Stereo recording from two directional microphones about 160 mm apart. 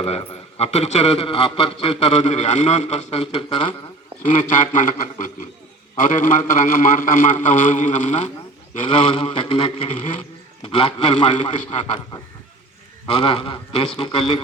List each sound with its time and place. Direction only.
0.0 s a man's voice: 40° left (ahead or behind)
4.3 s a man's voice: 55° left (ahead or behind)
8.9 s a man's voice: 30° left (ahead or behind)
11.3 s a man's voice: 45° left (ahead or behind)
13.1 s a man's voice: 35° left (ahead or behind)